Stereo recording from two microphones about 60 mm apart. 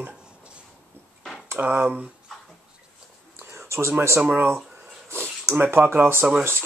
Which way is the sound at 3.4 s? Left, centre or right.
Right.